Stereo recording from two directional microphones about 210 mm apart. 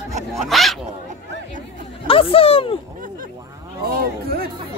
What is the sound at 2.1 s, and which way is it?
Speech, 25° left (ahead or behind).